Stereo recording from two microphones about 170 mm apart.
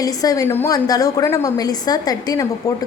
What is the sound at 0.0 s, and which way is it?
A woman's voice, 20° left (ahead or behind).